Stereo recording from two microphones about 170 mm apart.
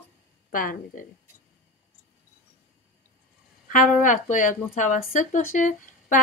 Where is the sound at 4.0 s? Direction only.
50° left (ahead or behind).